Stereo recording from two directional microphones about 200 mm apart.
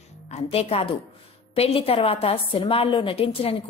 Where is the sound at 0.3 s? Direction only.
30° left (ahead or behind).